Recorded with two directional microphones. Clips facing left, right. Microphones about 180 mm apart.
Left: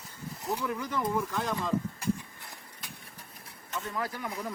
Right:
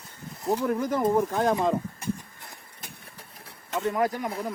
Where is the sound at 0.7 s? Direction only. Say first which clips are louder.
Right 8 dB; 45° right (ahead or behind).